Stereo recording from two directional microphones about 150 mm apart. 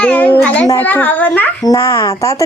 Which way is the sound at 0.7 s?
10° left (ahead or behind).